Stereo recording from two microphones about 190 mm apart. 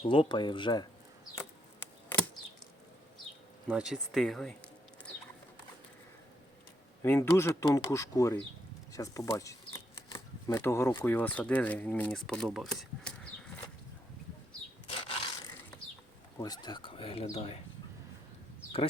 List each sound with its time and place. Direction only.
0.0 s speech: 25° left (ahead or behind)
1.4 s a sound: 10° left (ahead or behind)
3.7 s speech: 5° right (ahead or behind)
7.0 s speech: 15° left (ahead or behind)
16.4 s speech: 20° left (ahead or behind)